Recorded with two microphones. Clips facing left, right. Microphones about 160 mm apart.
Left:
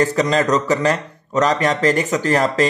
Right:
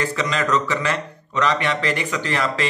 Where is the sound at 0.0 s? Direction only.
40° left (ahead or behind).